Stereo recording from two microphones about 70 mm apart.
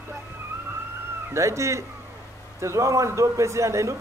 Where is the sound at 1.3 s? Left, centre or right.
Right.